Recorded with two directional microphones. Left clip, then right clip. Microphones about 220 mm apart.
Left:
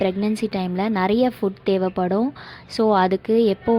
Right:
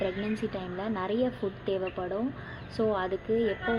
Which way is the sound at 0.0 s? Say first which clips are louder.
Left 9 dB; 35° left (ahead or behind).